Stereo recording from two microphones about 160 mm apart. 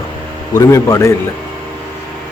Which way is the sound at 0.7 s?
20° left (ahead or behind).